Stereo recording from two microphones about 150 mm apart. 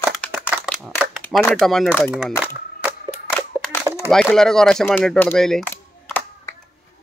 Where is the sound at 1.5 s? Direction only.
5° left (ahead or behind).